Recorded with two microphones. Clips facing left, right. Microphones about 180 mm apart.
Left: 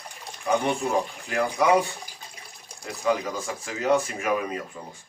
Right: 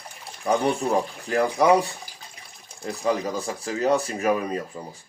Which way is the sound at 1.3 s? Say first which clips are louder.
Right 3 dB; 35° right (ahead or behind).